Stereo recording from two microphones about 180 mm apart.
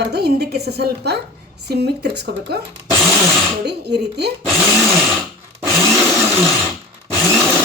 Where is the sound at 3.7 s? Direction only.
70° right (ahead or behind).